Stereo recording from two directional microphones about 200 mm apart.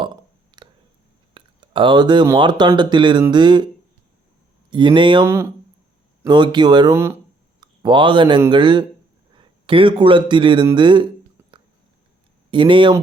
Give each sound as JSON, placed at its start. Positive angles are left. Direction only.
{"t": 0.0, "sound": "a sound", "side_deg": -20}
{"t": 1.3, "sound": "speech", "side_deg": -25}
{"t": 4.7, "sound": "speech", "side_deg": -25}
{"t": 5.2, "sound": "a man's voice", "side_deg": -15}
{"t": 12.5, "sound": "speech", "side_deg": -25}